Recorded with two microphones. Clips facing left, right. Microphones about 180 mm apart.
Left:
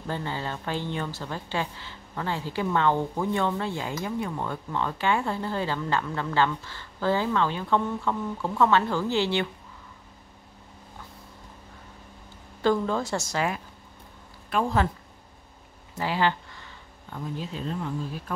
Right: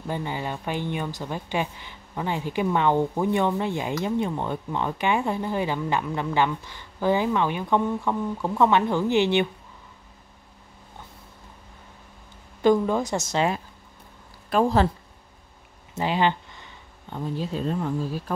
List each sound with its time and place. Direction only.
0.0 s speech: 15° right (ahead or behind)
12.6 s a woman's voice: 15° right (ahead or behind)
14.5 s speech: 35° right (ahead or behind)
15.9 s a sound: 20° right (ahead or behind)
17.4 s speech: 40° right (ahead or behind)